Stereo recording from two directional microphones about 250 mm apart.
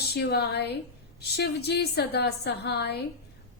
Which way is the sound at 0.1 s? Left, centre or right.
Left.